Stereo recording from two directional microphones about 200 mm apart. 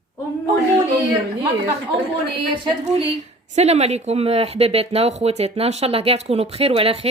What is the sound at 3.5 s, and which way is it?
Speech, 35° right (ahead or behind).